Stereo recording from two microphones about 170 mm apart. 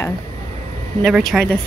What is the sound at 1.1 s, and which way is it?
Speech, centre (ahead or behind).